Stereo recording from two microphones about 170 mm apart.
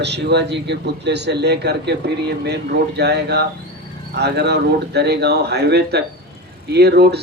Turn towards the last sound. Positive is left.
turn(degrees=-75)  # may be behind; listen again after turning